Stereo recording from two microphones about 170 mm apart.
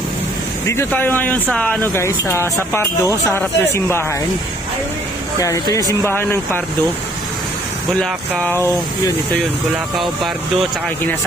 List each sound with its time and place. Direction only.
0.7 s speech: 15° left (ahead or behind)
5.4 s speech: 20° left (ahead or behind)
8.0 s speech: 10° left (ahead or behind)
9.9 s speech: centre (ahead or behind)